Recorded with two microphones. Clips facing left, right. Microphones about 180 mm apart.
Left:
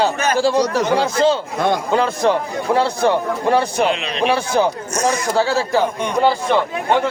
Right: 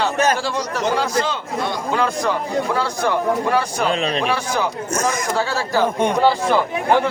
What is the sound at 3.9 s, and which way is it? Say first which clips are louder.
Speech: right 5 dB; 40° right (ahead or behind).